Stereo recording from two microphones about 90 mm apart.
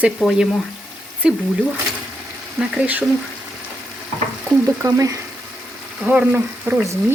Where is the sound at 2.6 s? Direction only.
15° right (ahead or behind).